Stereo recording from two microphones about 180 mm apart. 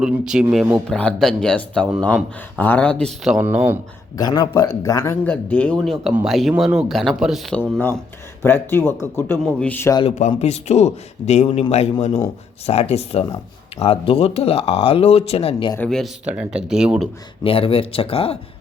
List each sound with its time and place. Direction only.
0.0 s speech: 5° right (ahead or behind)
3.3 s speech: 10° right (ahead or behind)
4.2 s speech: 20° left (ahead or behind)
5.3 s speech: 10° left (ahead or behind)
10.2 s speech: 40° left (ahead or behind)
12.6 s speech: 35° left (ahead or behind)
15.9 s speech: centre (ahead or behind)
17.4 s speech: 30° left (ahead or behind)